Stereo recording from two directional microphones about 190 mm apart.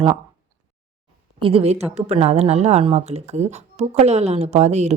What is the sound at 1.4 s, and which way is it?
A woman's voice, 30° right (ahead or behind).